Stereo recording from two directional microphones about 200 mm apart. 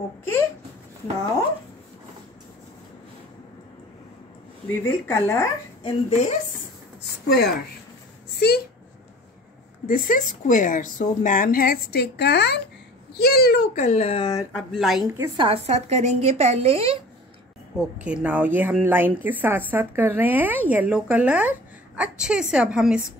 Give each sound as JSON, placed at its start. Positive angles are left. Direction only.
{"t": 4.8, "sound": "a woman's voice", "side_deg": 10}
{"t": 5.9, "sound": "a woman's voice", "side_deg": 30}
{"t": 7.2, "sound": "a woman's voice", "side_deg": 50}
{"t": 9.8, "sound": "a woman's voice", "side_deg": 45}
{"t": 13.8, "sound": "speech", "side_deg": 30}
{"t": 14.7, "sound": "speech", "side_deg": 0}
{"t": 15.1, "sound": "a woman's voice", "side_deg": -25}
{"t": 17.7, "sound": "speech", "side_deg": -5}